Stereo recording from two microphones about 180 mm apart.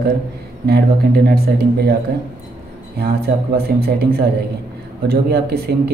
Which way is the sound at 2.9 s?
60° right (ahead or behind).